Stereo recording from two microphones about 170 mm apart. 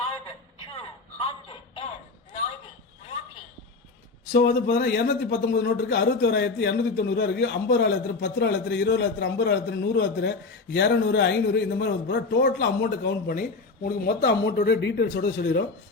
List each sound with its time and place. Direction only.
1.5 s a sound: 30° left (ahead or behind)
4.3 s speech: 65° left (ahead or behind); by 13.3 s 85° left
13.3 s speech: 60° left (ahead or behind); by 15.6 s 75° left (ahead or behind)